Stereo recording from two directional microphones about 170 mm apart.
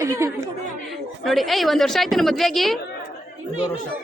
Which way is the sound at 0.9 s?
Centre (ahead or behind).